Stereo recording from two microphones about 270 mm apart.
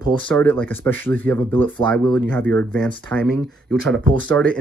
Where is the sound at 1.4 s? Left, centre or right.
Centre.